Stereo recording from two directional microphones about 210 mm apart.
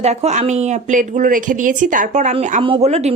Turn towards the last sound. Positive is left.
turn(degrees=-30)  # may be behind; listen again after turning